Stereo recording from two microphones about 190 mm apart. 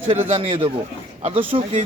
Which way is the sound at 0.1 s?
35° right (ahead or behind).